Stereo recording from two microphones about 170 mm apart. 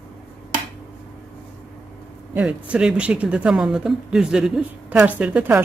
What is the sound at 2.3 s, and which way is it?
A woman's voice, 10° right (ahead or behind).